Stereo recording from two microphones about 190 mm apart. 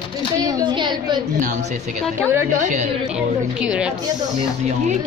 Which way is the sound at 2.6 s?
40° right (ahead or behind).